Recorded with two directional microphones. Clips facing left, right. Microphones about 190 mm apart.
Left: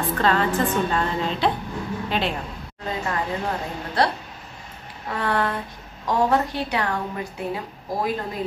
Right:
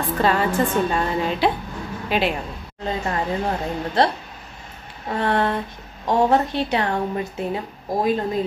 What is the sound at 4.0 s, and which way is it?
Speech, 25° right (ahead or behind).